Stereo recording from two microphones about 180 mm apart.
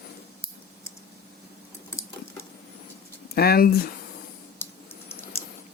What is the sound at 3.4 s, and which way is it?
Speech, 60° left (ahead or behind).